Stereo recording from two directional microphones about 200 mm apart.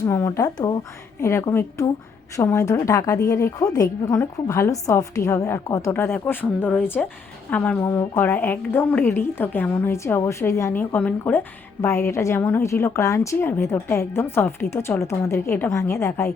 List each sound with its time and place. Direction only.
0.0 s a woman's voice: 15° left (ahead or behind)